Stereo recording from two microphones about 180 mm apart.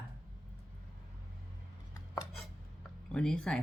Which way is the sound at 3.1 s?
5° left (ahead or behind).